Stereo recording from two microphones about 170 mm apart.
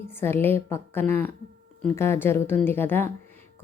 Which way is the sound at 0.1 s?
15° left (ahead or behind).